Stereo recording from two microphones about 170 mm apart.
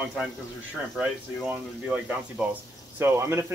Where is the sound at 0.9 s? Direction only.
5° right (ahead or behind).